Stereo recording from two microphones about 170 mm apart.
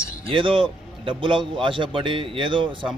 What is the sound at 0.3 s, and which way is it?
A man's voice, 30° right (ahead or behind).